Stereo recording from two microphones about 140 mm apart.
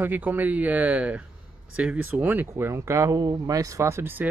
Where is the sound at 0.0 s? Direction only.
15° right (ahead or behind).